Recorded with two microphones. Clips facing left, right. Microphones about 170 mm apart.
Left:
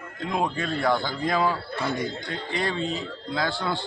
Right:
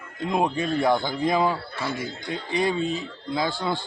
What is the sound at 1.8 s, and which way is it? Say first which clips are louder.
A man's voice: left 2 dB; 5° right (ahead or behind).